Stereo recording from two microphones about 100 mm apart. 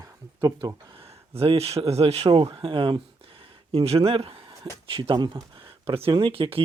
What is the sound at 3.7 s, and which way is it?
Speech, 85° right.